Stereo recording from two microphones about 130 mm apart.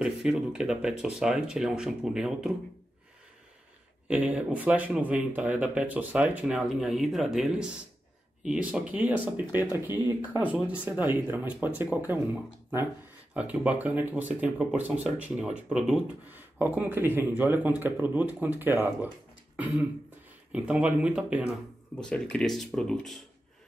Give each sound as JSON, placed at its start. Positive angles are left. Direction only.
{"t": 0.0, "sound": "speech", "side_deg": -5}
{"t": 4.1, "sound": "speech", "side_deg": -10}
{"t": 13.3, "sound": "speech", "side_deg": -10}
{"t": 22.1, "sound": "speech", "side_deg": 5}